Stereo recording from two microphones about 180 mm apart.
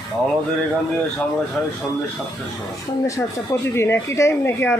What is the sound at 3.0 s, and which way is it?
Speech, 15° left (ahead or behind).